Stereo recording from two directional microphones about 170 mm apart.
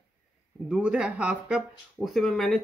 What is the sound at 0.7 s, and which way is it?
Speech, 5° right (ahead or behind).